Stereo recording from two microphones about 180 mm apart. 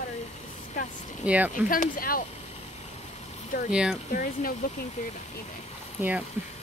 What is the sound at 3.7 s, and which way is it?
Speech, 5° right (ahead or behind).